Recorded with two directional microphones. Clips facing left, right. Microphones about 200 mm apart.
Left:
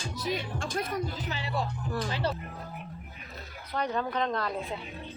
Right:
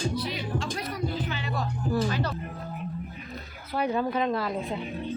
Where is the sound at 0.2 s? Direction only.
50° left (ahead or behind).